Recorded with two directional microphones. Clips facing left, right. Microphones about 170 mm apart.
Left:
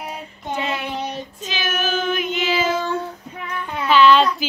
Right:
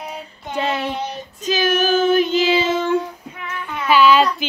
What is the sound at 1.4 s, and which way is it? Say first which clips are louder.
Child singing: right 8 dB; 40° right (ahead or behind).